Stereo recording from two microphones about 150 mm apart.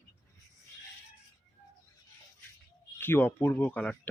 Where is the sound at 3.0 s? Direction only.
15° left (ahead or behind).